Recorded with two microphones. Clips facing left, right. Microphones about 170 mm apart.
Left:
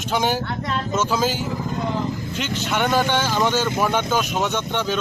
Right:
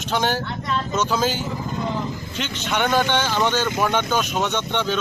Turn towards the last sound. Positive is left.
turn(degrees=5)  # may be behind; listen again after turning